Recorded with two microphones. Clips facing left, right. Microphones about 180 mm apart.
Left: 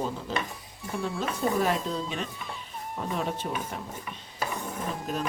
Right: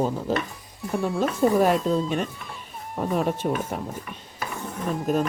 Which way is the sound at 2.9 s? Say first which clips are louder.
Right 7 dB; 50° right (ahead or behind).